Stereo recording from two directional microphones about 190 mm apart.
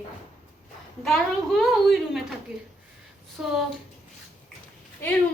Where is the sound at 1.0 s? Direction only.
Centre (ahead or behind).